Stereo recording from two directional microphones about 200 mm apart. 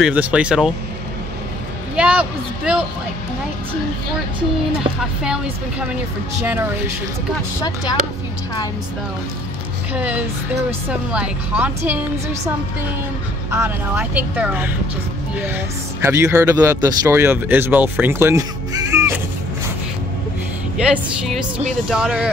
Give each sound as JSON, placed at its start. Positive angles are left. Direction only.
{"t": 0.0, "sound": "a man's voice", "side_deg": -5}
{"t": 2.0, "sound": "a man's voice", "side_deg": -5}
{"t": 5.2, "sound": "a man's voice", "side_deg": -5}
{"t": 7.6, "sound": "speech", "side_deg": 20}
{"t": 9.9, "sound": "speech", "side_deg": -5}
{"t": 13.5, "sound": "speech", "side_deg": -10}
{"t": 20.7, "sound": "a man's voice", "side_deg": -5}